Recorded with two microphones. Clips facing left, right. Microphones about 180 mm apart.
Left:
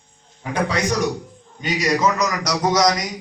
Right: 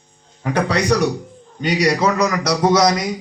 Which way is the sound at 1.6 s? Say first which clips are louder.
Right 4 dB; 35° right (ahead or behind).